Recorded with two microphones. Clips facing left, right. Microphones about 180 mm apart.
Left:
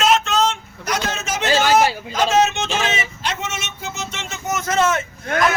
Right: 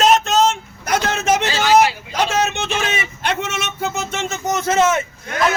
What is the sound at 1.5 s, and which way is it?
Hubbub, 45° left (ahead or behind).